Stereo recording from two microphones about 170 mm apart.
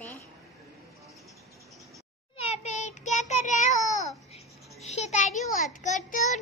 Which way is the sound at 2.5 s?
45° left (ahead or behind).